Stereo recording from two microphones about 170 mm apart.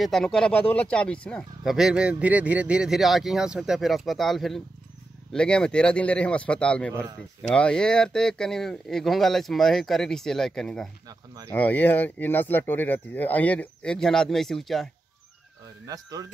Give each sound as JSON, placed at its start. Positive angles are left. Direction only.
{"t": 0.0, "sound": "speech", "side_deg": 0}
{"t": 11.1, "sound": "a sound", "side_deg": -20}
{"t": 11.5, "sound": "speech", "side_deg": 10}
{"t": 15.9, "sound": "speech", "side_deg": -20}